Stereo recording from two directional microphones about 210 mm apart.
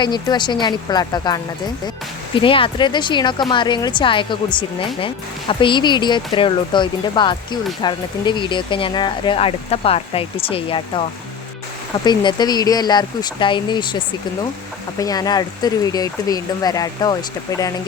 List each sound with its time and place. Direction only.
0.0 s speech: 20° left (ahead or behind)
12.0 s speech: 20° left (ahead or behind)